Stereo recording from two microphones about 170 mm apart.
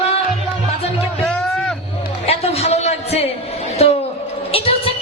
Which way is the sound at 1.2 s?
Centre (ahead or behind).